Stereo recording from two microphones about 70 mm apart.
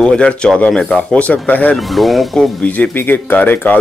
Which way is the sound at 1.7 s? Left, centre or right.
Centre.